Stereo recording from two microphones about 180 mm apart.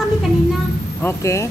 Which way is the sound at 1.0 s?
15° left (ahead or behind).